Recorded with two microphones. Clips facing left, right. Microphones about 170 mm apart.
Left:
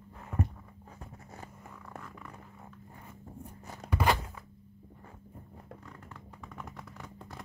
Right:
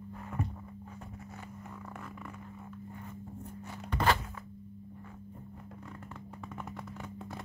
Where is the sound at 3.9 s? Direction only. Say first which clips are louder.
Even; 10° left (ahead or behind).